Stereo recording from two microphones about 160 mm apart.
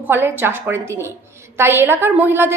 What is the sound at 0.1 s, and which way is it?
A woman's voice, 15° right (ahead or behind).